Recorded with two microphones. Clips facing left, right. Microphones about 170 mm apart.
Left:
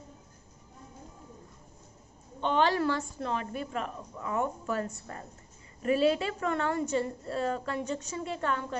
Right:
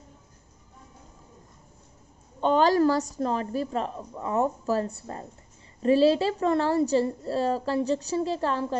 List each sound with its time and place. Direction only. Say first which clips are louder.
2.4 s a woman's voice: right 6 dB; 40° right (ahead or behind)